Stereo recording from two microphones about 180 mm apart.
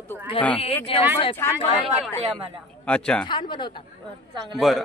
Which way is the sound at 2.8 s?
5° left (ahead or behind).